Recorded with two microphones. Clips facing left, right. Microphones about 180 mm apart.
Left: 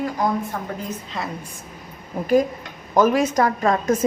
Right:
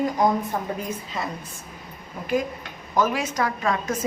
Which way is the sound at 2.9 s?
45° left (ahead or behind).